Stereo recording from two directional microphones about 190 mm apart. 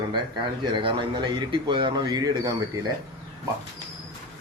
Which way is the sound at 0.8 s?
25° right (ahead or behind).